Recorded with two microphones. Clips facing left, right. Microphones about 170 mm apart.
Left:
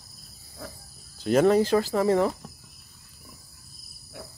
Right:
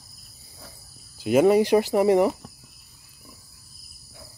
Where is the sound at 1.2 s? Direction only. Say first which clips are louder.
Right 2 dB; 10° right (ahead or behind).